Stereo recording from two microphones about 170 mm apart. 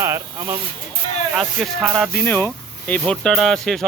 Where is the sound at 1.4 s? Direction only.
Centre (ahead or behind).